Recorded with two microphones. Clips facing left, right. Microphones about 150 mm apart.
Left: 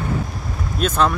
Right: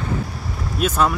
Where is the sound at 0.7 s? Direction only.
10° right (ahead or behind).